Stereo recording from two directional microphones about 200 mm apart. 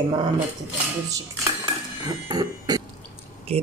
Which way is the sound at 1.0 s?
15° right (ahead or behind).